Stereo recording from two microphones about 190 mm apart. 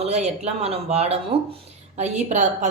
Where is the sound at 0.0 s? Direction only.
35° right (ahead or behind).